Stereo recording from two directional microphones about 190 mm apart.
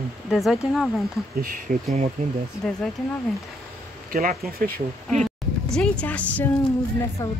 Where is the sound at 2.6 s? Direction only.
5° left (ahead or behind).